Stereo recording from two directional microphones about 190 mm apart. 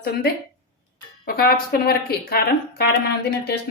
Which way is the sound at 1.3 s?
55° left (ahead or behind).